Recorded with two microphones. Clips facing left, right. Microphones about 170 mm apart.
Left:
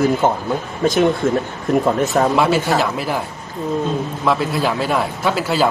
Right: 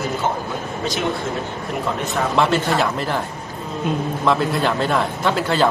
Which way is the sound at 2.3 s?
5° left (ahead or behind).